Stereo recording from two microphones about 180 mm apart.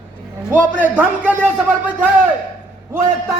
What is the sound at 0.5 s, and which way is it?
A man's voice, 10° right (ahead or behind).